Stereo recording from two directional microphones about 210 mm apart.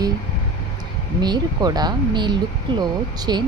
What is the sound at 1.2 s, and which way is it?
Speech, 20° right (ahead or behind).